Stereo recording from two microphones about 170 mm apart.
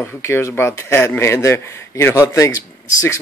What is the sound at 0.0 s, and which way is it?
A man's voice, 15° left (ahead or behind).